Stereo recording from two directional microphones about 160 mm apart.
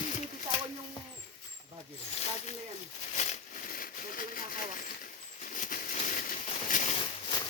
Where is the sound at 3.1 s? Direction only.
50° left (ahead or behind).